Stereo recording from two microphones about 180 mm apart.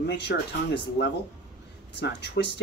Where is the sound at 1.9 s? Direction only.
75° left (ahead or behind).